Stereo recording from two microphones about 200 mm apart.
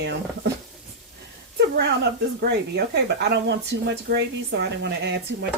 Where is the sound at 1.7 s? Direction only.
55° right (ahead or behind).